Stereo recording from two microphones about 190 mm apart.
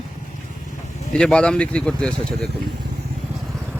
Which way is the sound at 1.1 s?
5° left (ahead or behind).